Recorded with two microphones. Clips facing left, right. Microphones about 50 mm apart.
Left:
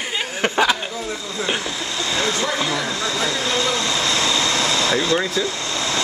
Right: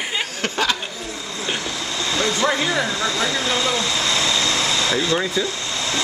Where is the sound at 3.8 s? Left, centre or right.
Centre.